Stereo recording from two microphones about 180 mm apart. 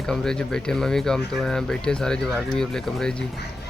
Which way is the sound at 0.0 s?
5° left (ahead or behind).